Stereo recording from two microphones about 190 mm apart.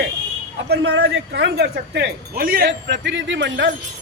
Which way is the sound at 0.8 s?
65° right (ahead or behind).